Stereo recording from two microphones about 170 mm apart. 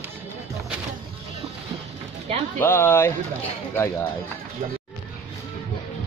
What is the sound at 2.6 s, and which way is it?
Speech, 15° left (ahead or behind).